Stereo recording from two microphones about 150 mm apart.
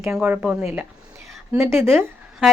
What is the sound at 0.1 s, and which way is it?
Speech, 10° right (ahead or behind).